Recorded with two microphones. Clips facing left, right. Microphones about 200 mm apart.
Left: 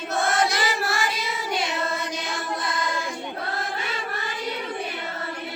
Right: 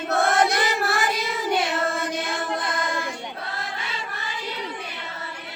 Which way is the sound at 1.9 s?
55° right (ahead or behind).